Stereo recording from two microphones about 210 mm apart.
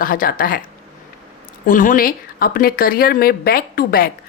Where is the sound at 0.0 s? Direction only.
40° left (ahead or behind).